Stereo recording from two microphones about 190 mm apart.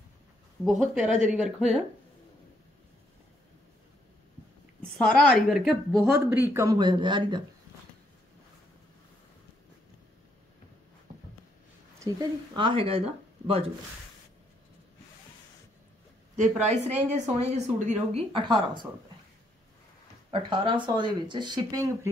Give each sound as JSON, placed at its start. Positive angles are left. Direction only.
{"t": 0.7, "sound": "a woman's voice", "side_deg": -5}
{"t": 4.9, "sound": "a woman's voice", "side_deg": 0}
{"t": 6.1, "sound": "speech", "side_deg": -10}
{"t": 12.0, "sound": "speech", "side_deg": -25}
{"t": 16.3, "sound": "a woman's voice", "side_deg": -35}
{"t": 18.3, "sound": "speech", "side_deg": -25}
{"t": 20.2, "sound": "speech", "side_deg": -25}